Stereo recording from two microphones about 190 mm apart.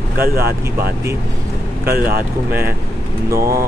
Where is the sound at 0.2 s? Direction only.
55° right (ahead or behind).